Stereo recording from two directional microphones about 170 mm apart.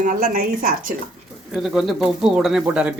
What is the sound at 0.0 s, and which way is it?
Speech, 55° right (ahead or behind).